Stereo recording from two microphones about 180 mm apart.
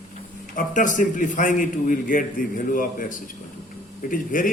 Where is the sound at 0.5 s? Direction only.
45° left (ahead or behind).